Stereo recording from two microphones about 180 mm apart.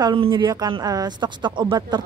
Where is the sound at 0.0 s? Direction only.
25° right (ahead or behind).